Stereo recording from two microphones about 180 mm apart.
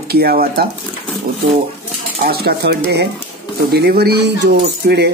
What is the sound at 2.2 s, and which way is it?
Speech, 60° right (ahead or behind).